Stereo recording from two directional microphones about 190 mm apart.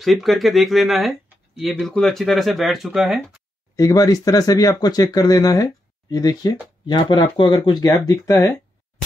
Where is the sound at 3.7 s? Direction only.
20° left (ahead or behind).